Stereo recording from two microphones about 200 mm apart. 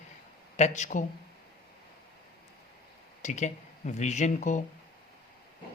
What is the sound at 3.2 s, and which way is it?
Speech, 35° left (ahead or behind).